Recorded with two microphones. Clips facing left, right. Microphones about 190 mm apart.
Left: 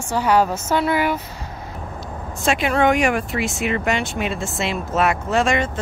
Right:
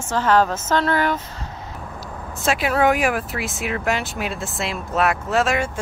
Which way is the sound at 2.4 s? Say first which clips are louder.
Left 1 dB; 5° right (ahead or behind).